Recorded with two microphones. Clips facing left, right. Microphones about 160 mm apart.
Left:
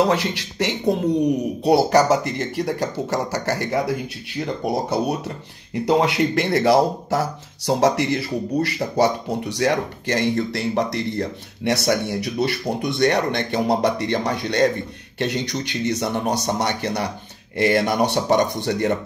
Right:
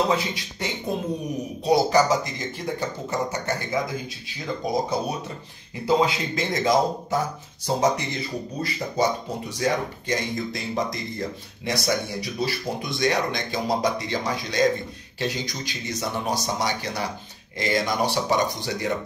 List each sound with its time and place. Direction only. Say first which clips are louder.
0.1 s speech: left 3 dB; 75° left (ahead or behind)
1.6 s speech: left 2 dB; 65° left (ahead or behind)